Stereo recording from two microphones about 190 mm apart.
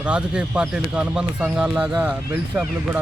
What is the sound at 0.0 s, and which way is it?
Speech, 5° right (ahead or behind).